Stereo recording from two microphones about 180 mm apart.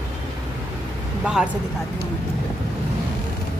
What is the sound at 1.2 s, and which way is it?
Speech, 5° right (ahead or behind).